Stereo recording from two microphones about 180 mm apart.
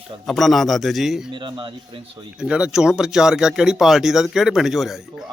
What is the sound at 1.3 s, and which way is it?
Speech, 25° right (ahead or behind).